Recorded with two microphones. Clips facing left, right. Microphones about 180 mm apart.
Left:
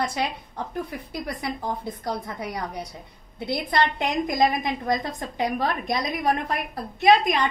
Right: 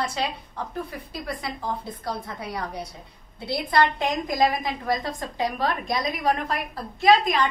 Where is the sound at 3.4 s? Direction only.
20° left (ahead or behind).